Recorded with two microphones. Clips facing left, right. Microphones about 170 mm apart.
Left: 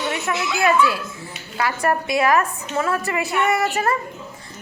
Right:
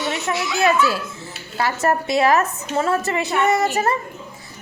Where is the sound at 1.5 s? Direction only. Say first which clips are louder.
Right 1 dB; 25° right (ahead or behind).